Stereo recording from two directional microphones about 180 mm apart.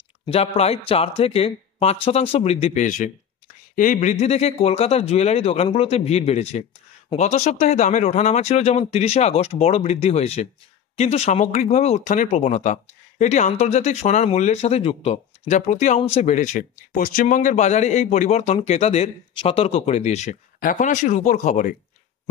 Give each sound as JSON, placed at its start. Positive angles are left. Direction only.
{"t": 0.3, "sound": "speech", "side_deg": 35}